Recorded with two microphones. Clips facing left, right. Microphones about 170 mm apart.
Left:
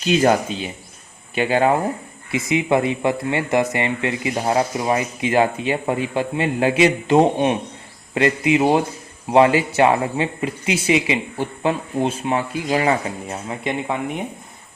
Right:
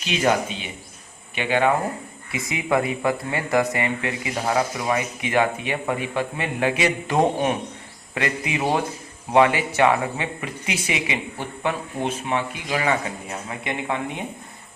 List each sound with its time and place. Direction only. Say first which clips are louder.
0.0 s speech: left 5 dB; 40° left (ahead or behind)
2.3 s speech: left 5 dB; 25° left (ahead or behind)
13.5 s speech: left 3 dB; 20° left (ahead or behind)